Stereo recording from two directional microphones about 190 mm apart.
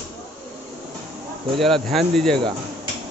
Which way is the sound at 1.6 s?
Centre (ahead or behind).